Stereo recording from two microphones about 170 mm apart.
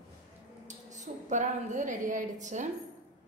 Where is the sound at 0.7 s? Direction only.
45° right (ahead or behind).